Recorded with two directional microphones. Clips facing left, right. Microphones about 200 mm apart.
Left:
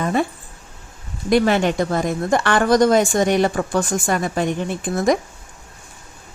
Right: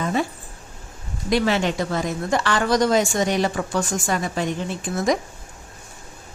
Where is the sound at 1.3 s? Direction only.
50° left (ahead or behind).